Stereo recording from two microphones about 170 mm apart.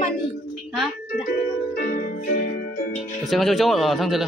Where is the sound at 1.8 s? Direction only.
55° left (ahead or behind).